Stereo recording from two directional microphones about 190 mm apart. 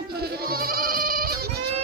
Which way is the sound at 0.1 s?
55° right (ahead or behind).